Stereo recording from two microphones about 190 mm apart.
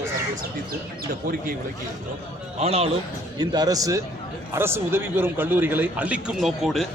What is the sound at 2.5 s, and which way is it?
Speech, 35° right (ahead or behind).